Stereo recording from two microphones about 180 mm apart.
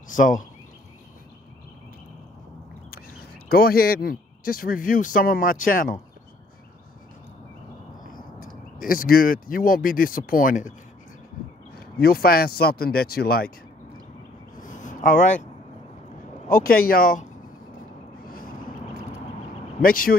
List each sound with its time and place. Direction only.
0.1 s speech: 45° left (ahead or behind)
3.4 s speech: 55° left (ahead or behind)
8.4 s speech: 50° left (ahead or behind)
11.7 s speech: 60° left (ahead or behind)
14.6 s a sound: 45° left (ahead or behind)
16.4 s speech: 50° left (ahead or behind)
18.2 s a sound: 55° left (ahead or behind)
19.8 s speech: 55° left (ahead or behind)